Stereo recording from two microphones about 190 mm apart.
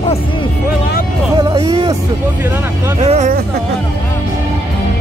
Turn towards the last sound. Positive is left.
turn(degrees=-35)  # may be behind; listen again after turning